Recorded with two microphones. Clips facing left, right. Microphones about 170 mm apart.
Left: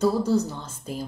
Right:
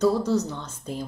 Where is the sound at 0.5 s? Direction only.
10° left (ahead or behind).